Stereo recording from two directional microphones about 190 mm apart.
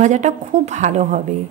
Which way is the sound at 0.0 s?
40° right (ahead or behind).